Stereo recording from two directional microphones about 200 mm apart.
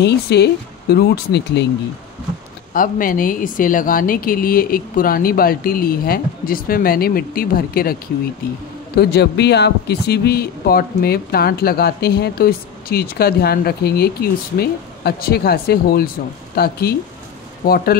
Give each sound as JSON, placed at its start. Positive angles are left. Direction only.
{"t": 0.0, "sound": "speech", "side_deg": 55}
{"t": 2.7, "sound": "speech", "side_deg": 45}